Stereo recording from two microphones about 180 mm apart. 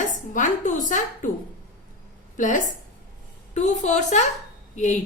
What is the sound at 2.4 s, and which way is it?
A woman's voice, 45° left (ahead or behind).